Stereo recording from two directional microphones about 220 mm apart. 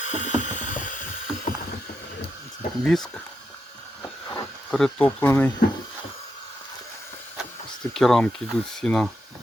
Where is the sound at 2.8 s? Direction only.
Centre (ahead or behind).